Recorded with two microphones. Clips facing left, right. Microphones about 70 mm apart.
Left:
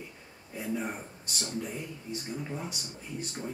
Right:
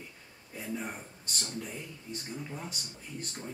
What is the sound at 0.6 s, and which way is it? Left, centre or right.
A man's voice, centre.